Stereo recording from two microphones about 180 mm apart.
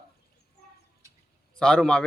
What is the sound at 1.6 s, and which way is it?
Speech, 5° left (ahead or behind).